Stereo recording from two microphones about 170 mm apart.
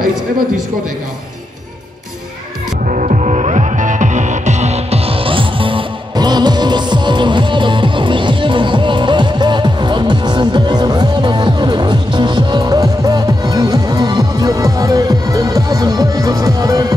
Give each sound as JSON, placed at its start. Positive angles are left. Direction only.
{"t": 2.9, "sound": "music", "side_deg": -45}